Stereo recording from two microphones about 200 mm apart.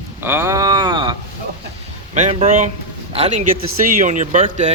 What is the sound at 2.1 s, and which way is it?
Speech, 35° right (ahead or behind).